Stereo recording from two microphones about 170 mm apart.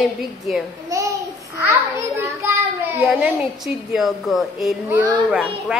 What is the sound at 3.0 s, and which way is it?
A woman's voice, 5° right (ahead or behind).